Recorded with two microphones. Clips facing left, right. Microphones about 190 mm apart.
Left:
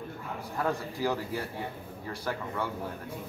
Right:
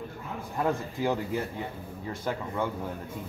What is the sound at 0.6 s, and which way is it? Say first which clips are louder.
Speech: right 2 dB; 20° right (ahead or behind).